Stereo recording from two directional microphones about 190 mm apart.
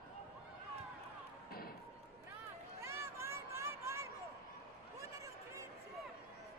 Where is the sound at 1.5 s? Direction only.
50° left (ahead or behind).